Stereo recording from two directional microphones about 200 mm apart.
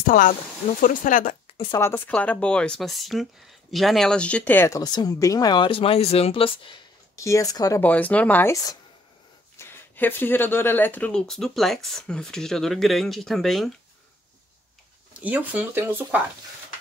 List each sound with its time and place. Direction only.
0.0 s speech: 40° left (ahead or behind)
1.5 s a sound: 25° left (ahead or behind)
1.8 s speech: 10° left (ahead or behind)
15.1 s speech: 5° right (ahead or behind)